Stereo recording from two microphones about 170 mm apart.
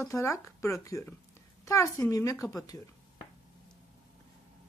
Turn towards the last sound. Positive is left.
turn(degrees=20)  # may be behind; listen again after turning